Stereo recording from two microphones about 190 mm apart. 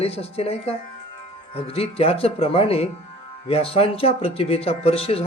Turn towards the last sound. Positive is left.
turn(degrees=30)  # may be behind; listen again after turning